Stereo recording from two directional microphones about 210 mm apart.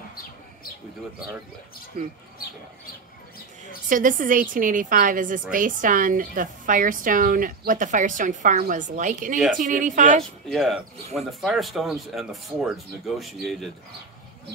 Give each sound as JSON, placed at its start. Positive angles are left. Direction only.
{"t": 3.9, "sound": "a woman's voice", "side_deg": -40}
{"t": 10.5, "sound": "speech", "side_deg": 0}